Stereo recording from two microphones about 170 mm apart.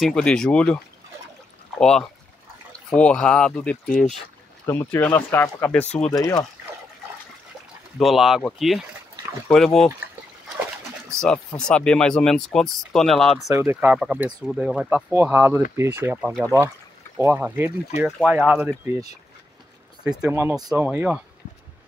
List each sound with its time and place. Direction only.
0.0 s speech: 5° left (ahead or behind)
1.8 s speech: 5° left (ahead or behind)
6.1 s speech: 20° left (ahead or behind)
8.0 s speech: centre (ahead or behind)
11.1 s speech: 5° left (ahead or behind)
13.6 s speech: 10° right (ahead or behind)
20.1 s speech: 5° right (ahead or behind)